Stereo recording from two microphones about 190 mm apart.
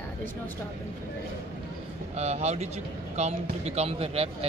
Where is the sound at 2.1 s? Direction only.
35° right (ahead or behind).